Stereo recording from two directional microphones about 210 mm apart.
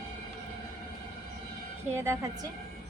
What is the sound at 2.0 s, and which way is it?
Speech, 15° right (ahead or behind).